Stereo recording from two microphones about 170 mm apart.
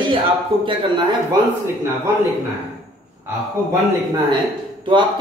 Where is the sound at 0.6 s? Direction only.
25° right (ahead or behind).